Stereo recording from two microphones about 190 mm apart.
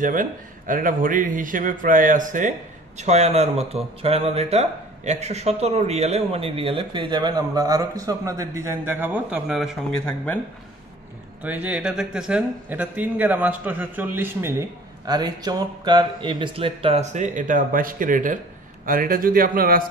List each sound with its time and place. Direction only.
0.0 s speech: 45° right (ahead or behind); by 10.4 s 5° left (ahead or behind)
11.4 s speech: 10° right (ahead or behind); by 19.8 s 50° right (ahead or behind)